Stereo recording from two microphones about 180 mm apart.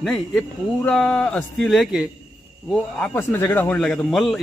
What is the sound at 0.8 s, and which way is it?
A man's voice, 5° left (ahead or behind).